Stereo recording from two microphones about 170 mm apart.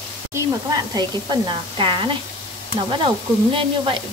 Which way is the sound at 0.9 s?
25° right (ahead or behind).